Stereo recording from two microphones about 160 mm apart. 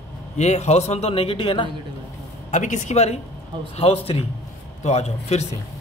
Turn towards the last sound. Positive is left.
turn(degrees=45)  # may be behind; listen again after turning